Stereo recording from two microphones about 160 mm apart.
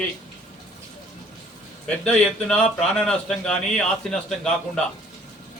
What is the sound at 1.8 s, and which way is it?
A man's voice, 5° left (ahead or behind).